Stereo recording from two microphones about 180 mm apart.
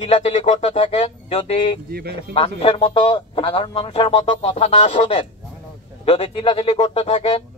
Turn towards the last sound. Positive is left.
turn(degrees=30)  # may be behind; listen again after turning